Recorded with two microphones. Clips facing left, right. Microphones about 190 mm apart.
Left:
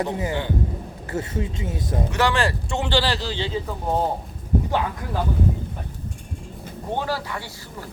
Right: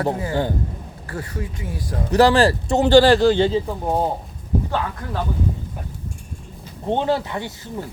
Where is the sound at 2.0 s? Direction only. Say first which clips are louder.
Right 9 dB; 35° right (ahead or behind); by 3.5 s 50° right (ahead or behind).